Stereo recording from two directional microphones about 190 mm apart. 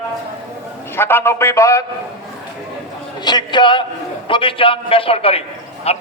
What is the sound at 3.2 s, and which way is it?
A man's voice, 25° left (ahead or behind).